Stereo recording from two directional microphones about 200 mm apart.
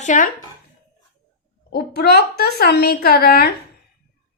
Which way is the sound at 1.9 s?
50° left (ahead or behind).